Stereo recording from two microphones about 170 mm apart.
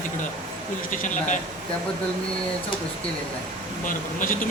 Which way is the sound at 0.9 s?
50° left (ahead or behind).